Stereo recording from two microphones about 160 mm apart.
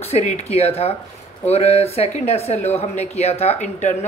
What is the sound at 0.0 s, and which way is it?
Speech, 45° left (ahead or behind).